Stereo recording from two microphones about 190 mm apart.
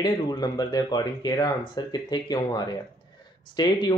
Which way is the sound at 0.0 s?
20° left (ahead or behind).